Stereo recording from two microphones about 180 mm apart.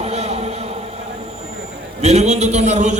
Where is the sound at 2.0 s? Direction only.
40° right (ahead or behind).